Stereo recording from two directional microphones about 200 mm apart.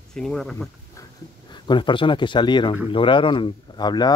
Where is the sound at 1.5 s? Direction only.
25° left (ahead or behind).